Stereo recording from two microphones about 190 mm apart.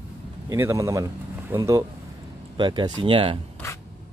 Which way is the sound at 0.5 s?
15° right (ahead or behind).